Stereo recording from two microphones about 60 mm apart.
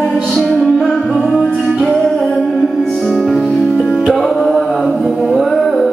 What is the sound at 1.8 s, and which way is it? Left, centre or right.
Music, centre.